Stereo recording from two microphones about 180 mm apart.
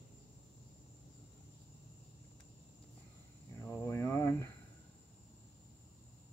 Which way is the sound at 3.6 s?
15° left (ahead or behind).